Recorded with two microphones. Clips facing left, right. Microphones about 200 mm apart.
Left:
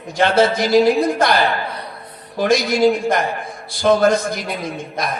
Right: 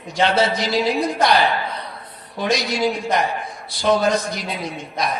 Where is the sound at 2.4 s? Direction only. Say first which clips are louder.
Left 6 dB; 50° left (ahead or behind).